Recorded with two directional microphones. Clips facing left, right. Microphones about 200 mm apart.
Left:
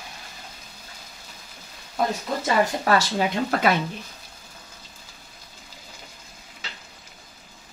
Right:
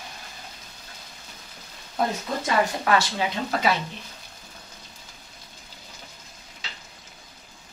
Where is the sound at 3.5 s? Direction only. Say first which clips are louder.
Left 1 dB; 55° left (ahead or behind).